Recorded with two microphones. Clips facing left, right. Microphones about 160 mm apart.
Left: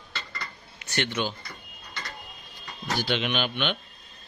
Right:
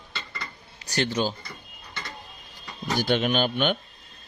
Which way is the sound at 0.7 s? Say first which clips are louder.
Right 3 dB; 35° right (ahead or behind).